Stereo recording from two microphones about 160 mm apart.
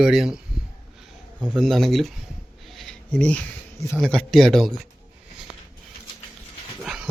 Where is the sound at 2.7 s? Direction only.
5° left (ahead or behind).